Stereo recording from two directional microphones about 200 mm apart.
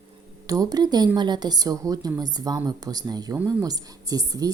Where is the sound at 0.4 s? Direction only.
20° right (ahead or behind).